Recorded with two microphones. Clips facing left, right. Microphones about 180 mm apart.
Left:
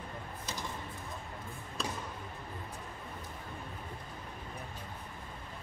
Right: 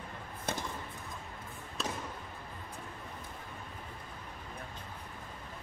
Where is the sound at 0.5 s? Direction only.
55° right (ahead or behind).